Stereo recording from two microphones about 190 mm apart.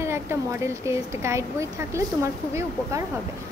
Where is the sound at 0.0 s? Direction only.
15° right (ahead or behind).